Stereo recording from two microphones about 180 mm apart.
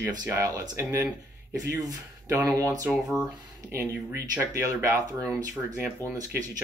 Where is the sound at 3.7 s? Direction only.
15° right (ahead or behind).